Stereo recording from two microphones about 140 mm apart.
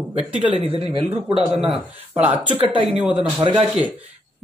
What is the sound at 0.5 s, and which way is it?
Speech, 45° right (ahead or behind).